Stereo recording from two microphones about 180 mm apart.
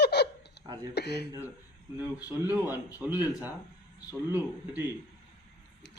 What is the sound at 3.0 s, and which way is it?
Speech, 5° right (ahead or behind).